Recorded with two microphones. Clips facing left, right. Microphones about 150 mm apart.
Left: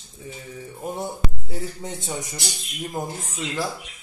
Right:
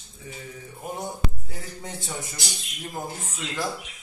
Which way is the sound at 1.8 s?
20° left (ahead or behind).